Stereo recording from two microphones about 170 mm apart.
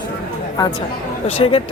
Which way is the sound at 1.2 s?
35° left (ahead or behind).